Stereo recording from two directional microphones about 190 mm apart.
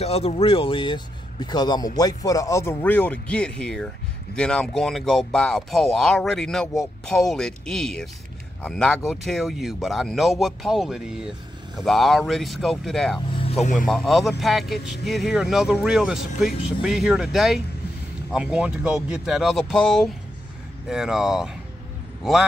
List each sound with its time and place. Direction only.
0.0 s speech: 30° left (ahead or behind); by 13.2 s centre (ahead or behind)
13.4 s speech: 35° left (ahead or behind)
13.8 s a man's voice: centre (ahead or behind)